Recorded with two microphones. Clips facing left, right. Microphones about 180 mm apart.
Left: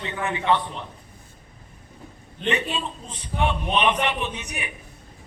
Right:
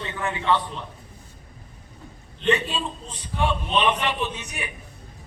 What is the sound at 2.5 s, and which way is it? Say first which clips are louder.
A man's voice: right 2 dB; 20° left (ahead or behind).